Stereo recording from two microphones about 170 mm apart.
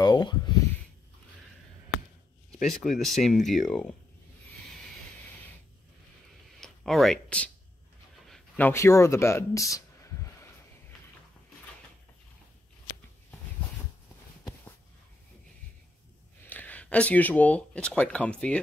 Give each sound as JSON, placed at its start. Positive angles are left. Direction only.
{"t": 0.0, "sound": "a sound", "side_deg": 25}
{"t": 2.6, "sound": "speech", "side_deg": 0}
{"t": 6.6, "sound": "speech", "side_deg": 0}
{"t": 16.4, "sound": "speech", "side_deg": 10}